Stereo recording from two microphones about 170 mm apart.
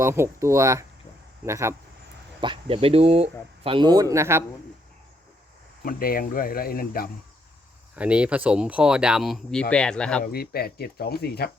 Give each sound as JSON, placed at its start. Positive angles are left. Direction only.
{"t": 0.0, "sound": "speech", "side_deg": -15}
{"t": 2.4, "sound": "speech", "side_deg": -30}
{"t": 5.8, "sound": "speech", "side_deg": 55}
{"t": 7.9, "sound": "speech", "side_deg": -5}
{"t": 10.3, "sound": "speech", "side_deg": 65}